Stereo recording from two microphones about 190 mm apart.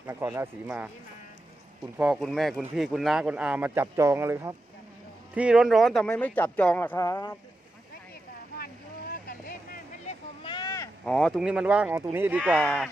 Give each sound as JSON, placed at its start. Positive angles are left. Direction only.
{"t": 0.0, "sound": "speech", "side_deg": -15}
{"t": 2.0, "sound": "speech", "side_deg": 0}
{"t": 8.5, "sound": "vehicle", "side_deg": 50}
{"t": 10.4, "sound": "a sound", "side_deg": 25}
{"t": 11.0, "sound": "speech", "side_deg": 5}
{"t": 12.6, "sound": "speech", "side_deg": 10}